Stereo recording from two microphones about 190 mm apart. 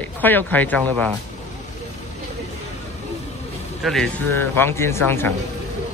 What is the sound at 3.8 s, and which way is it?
Speech, centre (ahead or behind).